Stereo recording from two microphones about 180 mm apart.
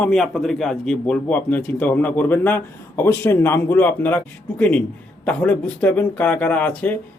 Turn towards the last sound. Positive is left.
turn(degrees=5)  # may be behind; listen again after turning